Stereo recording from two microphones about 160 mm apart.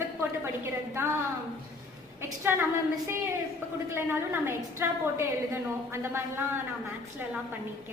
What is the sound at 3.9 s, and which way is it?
A woman's voice, 15° right (ahead or behind).